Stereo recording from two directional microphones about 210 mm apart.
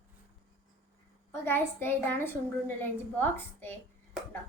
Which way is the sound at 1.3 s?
10° left (ahead or behind).